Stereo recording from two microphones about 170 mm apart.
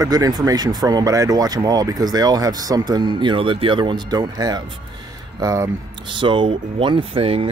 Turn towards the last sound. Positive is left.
turn(degrees=-35)  # may be behind; listen again after turning